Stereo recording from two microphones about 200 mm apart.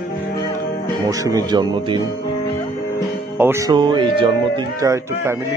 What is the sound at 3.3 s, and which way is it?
Speech, 10° right (ahead or behind).